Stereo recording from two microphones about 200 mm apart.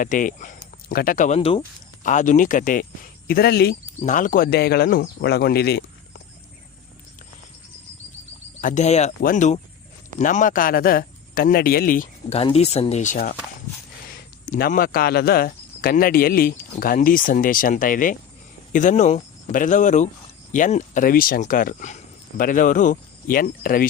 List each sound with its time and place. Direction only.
0.0 s speech: 40° left (ahead or behind)
2.0 s speech: 40° left (ahead or behind)
4.0 s speech: 40° left (ahead or behind)
8.6 s speech: 35° left (ahead or behind)
12.3 s speech: 30° left (ahead or behind)
14.4 s speech: 45° left (ahead or behind)